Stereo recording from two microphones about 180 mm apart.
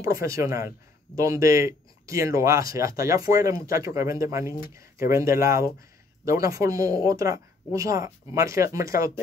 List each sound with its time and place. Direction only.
0.0 s speech: 15° right (ahead or behind)